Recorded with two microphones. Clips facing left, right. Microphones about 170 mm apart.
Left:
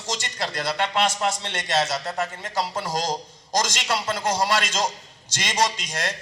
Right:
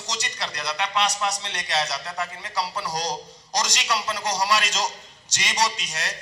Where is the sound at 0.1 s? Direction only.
50° left (ahead or behind).